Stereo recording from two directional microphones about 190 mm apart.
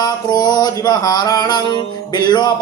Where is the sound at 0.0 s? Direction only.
20° left (ahead or behind).